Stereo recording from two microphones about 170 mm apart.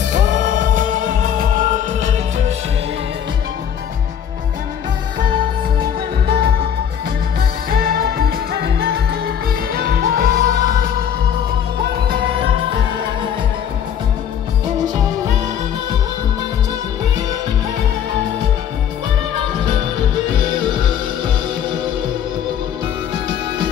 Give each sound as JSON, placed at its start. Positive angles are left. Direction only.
{"t": 0.1, "sound": "music", "side_deg": -50}
{"t": 6.2, "sound": "music", "side_deg": -65}
{"t": 7.7, "sound": "music", "side_deg": -60}
{"t": 9.8, "sound": "music", "side_deg": -60}